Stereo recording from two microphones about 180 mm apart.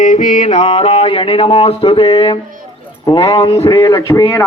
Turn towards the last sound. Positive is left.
turn(degrees=15)  # may be behind; listen again after turning